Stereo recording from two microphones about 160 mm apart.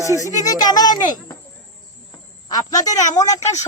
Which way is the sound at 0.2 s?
20° left (ahead or behind).